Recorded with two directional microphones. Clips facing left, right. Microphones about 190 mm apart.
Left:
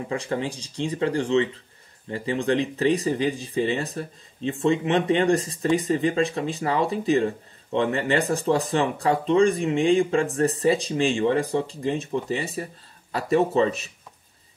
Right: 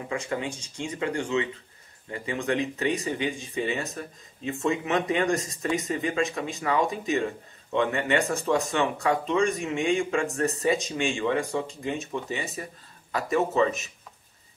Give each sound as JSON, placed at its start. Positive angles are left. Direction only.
{"t": 0.1, "sound": "speech", "side_deg": 35}